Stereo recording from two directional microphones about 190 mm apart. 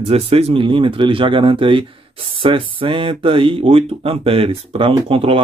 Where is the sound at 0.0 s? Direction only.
30° right (ahead or behind).